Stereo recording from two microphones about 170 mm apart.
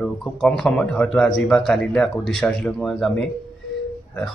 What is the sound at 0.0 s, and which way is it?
Speech, 5° left (ahead or behind).